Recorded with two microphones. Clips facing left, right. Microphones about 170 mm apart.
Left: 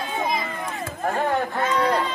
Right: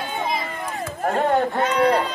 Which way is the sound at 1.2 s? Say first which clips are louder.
Right 4 dB; 25° right (ahead or behind).